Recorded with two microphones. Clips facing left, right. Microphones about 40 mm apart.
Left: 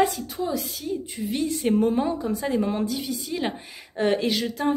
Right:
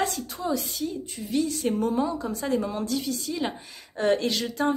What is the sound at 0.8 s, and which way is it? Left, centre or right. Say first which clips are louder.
A woman's voice: left 2 dB; centre.